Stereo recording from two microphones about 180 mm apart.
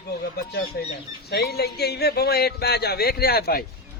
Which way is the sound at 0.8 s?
60° left (ahead or behind).